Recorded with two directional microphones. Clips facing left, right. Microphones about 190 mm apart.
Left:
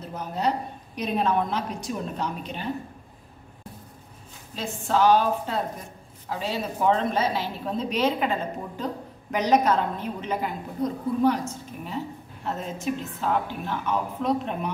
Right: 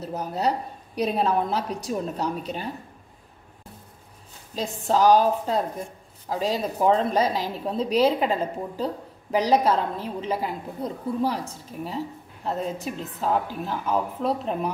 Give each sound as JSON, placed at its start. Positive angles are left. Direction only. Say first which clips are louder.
{"t": 0.0, "sound": "a woman's voice", "louder": "right 2 dB", "side_deg": -40}
{"t": 4.6, "sound": "a woman's voice", "louder": "right 1 dB", "side_deg": -40}